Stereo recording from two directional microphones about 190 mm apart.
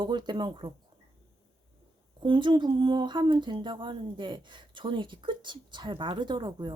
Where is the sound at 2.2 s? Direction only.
25° right (ahead or behind).